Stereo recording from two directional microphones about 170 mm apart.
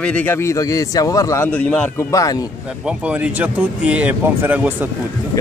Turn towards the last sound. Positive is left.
turn(degrees=-10)  # may be behind; listen again after turning